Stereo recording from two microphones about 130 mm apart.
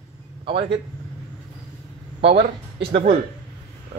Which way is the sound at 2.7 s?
50° right (ahead or behind).